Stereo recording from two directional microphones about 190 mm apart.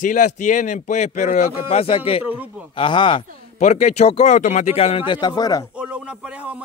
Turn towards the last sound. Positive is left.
turn(degrees=-5)  # may be behind; listen again after turning